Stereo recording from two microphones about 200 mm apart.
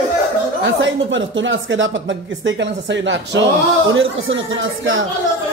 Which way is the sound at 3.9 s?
80° right.